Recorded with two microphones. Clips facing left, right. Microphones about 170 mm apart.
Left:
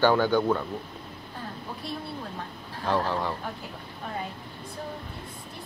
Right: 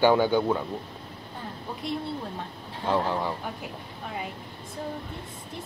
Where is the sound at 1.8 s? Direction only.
20° right (ahead or behind).